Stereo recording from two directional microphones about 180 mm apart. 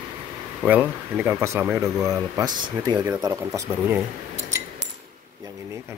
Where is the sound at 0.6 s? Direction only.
5° right (ahead or behind).